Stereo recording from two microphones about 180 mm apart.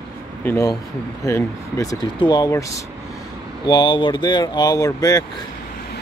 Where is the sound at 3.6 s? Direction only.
25° left (ahead or behind).